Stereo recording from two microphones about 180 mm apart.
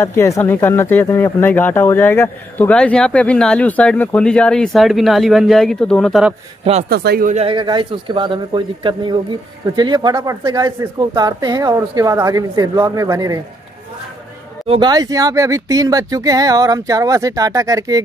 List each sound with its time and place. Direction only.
0.0 s speech: 15° left (ahead or behind)
6.6 s speech: 35° right (ahead or behind)
6.9 s speech: 60° right (ahead or behind)
7.2 s speech: 40° right (ahead or behind)
7.5 s speech: 25° right (ahead or behind)
14.7 s speech: 25° right (ahead or behind)